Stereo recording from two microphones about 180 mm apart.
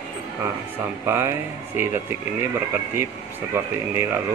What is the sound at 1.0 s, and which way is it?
Speech, 15° right (ahead or behind).